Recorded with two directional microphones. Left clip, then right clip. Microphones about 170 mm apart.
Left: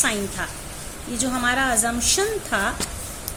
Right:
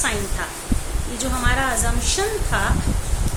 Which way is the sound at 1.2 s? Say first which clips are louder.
Left 1 dB; 50° left (ahead or behind).